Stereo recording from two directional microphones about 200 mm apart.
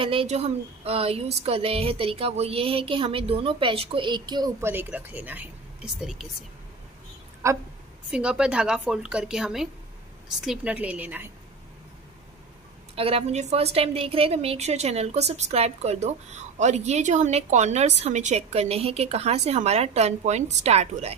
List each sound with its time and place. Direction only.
0.0 s speech: 25° right (ahead or behind); by 6.2 s 5° right (ahead or behind)
7.4 s a woman's voice: 15° right (ahead or behind)
12.9 s a woman's voice: 30° right (ahead or behind)